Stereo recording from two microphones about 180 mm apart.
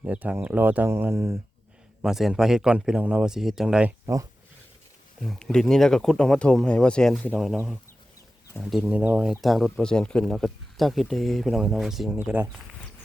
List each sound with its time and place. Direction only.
0.0 s speech: 10° right (ahead or behind)
2.0 s speech: centre (ahead or behind)
4.0 s speech: 20° right (ahead or behind)
5.2 s speech: centre (ahead or behind)